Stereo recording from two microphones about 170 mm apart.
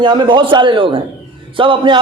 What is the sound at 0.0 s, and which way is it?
A man's voice, 25° right (ahead or behind).